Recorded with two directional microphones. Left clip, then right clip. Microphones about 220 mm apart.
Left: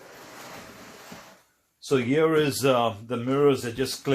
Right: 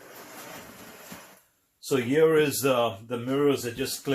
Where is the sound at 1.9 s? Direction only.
35° left (ahead or behind).